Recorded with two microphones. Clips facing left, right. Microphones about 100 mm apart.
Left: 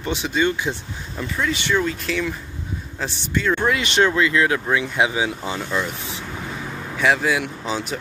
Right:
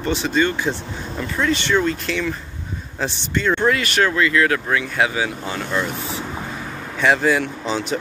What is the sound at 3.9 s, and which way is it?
Speech, 25° left (ahead or behind).